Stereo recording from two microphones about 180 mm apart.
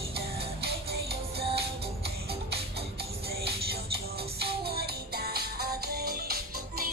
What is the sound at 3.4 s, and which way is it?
Music, 60° right (ahead or behind).